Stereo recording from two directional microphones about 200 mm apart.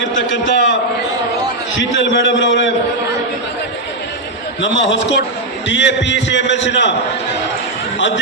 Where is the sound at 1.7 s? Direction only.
70° left (ahead or behind).